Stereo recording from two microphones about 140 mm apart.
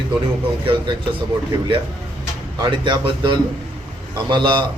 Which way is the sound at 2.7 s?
35° right (ahead or behind).